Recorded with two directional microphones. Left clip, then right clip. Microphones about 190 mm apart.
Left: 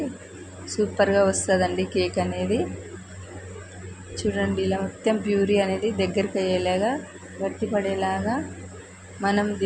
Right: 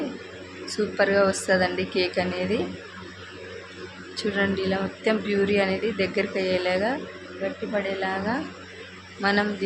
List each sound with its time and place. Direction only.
0.6 s a woman's voice: 15° left (ahead or behind)
4.2 s speech: 10° left (ahead or behind)